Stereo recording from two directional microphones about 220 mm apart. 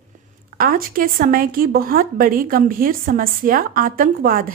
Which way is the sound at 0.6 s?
40° right (ahead or behind).